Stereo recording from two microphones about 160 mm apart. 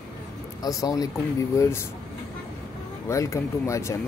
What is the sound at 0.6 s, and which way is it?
Speech, 20° left (ahead or behind).